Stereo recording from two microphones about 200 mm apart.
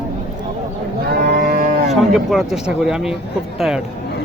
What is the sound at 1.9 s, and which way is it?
Speech, centre (ahead or behind).